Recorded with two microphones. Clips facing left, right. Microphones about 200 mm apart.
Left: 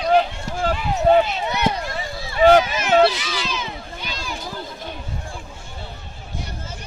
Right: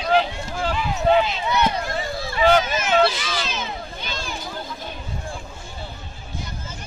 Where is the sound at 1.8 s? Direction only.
50° right (ahead or behind).